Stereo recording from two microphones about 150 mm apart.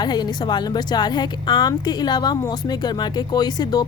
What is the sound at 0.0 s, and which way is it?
A woman's voice, 30° left (ahead or behind).